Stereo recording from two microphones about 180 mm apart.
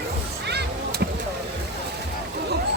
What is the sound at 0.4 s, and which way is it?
Vehicle, 70° right (ahead or behind).